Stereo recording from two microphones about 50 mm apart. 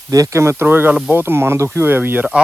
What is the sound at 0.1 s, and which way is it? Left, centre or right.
Speech, right.